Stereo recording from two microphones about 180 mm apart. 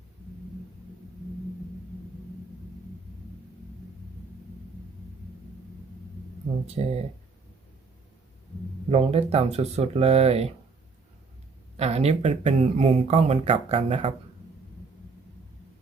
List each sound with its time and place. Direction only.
6.8 s speech: 30° right (ahead or behind)
8.9 s speech: 35° right (ahead or behind)
11.8 s speech: 35° right (ahead or behind)